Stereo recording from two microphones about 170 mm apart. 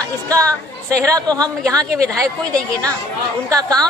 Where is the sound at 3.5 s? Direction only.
20° right (ahead or behind).